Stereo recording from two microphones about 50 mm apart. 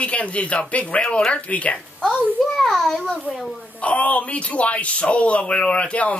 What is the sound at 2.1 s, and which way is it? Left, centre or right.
Speech, centre.